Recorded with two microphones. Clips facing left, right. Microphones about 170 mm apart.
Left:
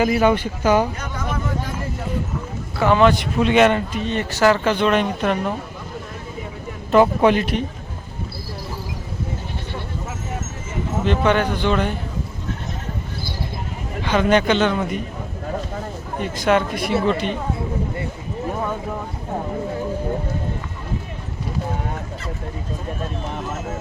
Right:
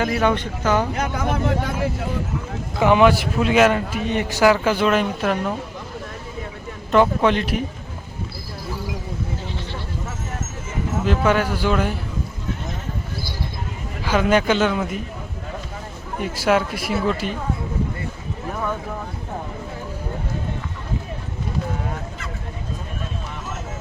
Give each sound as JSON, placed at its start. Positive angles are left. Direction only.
{"t": 0.0, "sound": "speech", "side_deg": 5}
{"t": 0.9, "sound": "speech", "side_deg": -65}
{"t": 2.7, "sound": "a man's voice", "side_deg": -15}
{"t": 6.9, "sound": "speech", "side_deg": 10}
{"t": 11.0, "sound": "speech", "side_deg": -5}
{"t": 14.0, "sound": "speech", "side_deg": -5}
{"t": 16.2, "sound": "speech", "side_deg": -5}